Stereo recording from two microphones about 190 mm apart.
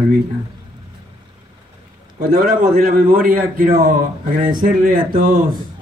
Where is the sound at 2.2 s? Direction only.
50° right (ahead or behind).